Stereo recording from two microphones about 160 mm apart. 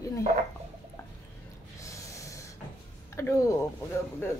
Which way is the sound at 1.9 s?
20° left (ahead or behind).